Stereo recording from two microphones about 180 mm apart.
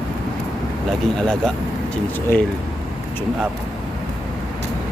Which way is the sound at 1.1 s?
5° left (ahead or behind).